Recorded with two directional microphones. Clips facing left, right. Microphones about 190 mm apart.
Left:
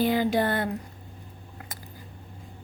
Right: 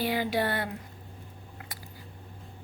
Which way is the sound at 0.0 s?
45° left (ahead or behind).